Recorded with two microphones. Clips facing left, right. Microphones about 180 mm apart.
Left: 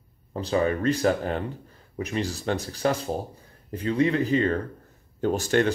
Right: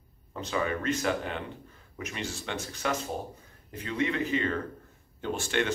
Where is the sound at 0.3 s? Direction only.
35° left (ahead or behind).